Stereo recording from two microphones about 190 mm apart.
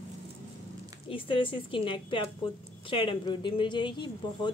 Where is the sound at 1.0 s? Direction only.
25° left (ahead or behind).